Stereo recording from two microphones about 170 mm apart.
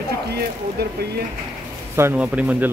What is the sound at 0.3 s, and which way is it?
Speech, 70° right (ahead or behind).